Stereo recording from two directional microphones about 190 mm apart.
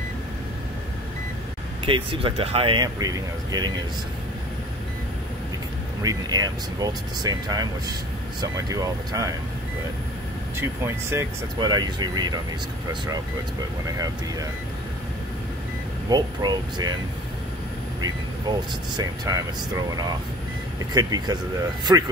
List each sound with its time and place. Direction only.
1.9 s speech: 30° right (ahead or behind)
6.0 s speech: 20° right (ahead or behind)
10.6 s speech: 15° right (ahead or behind)
16.1 s speech: 20° right (ahead or behind)
18.5 s speech: 20° right (ahead or behind)
20.9 s speech: 20° right (ahead or behind)